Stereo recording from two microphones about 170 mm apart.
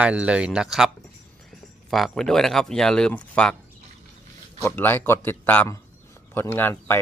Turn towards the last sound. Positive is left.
turn(degrees=15)  # may be behind; listen again after turning